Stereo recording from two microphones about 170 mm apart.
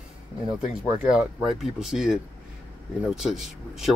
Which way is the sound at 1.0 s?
5° right (ahead or behind).